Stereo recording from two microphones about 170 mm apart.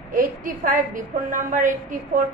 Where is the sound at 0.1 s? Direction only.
55° right (ahead or behind).